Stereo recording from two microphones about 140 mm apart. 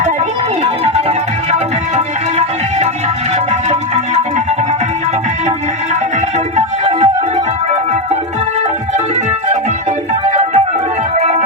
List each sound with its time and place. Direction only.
3.7 s music: 50° right (ahead or behind)
6.6 s music: 55° right (ahead or behind)
10.2 s music: 55° right (ahead or behind)